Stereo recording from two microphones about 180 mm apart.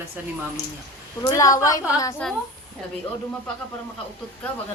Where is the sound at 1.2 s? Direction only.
20° left (ahead or behind).